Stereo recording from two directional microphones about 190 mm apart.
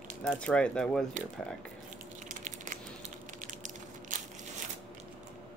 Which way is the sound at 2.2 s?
40° right (ahead or behind).